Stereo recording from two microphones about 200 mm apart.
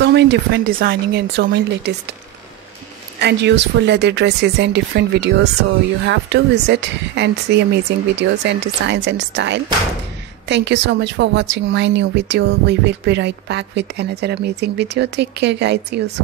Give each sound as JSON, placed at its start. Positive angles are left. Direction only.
{"t": 0.0, "sound": "speech", "side_deg": -60}
{"t": 3.2, "sound": "speech", "side_deg": -60}